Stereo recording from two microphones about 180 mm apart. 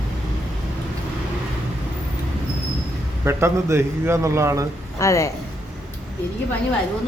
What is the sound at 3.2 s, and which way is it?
A man's voice, 15° right (ahead or behind).